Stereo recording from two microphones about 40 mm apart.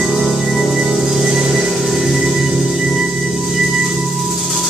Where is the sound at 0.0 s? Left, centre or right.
Centre.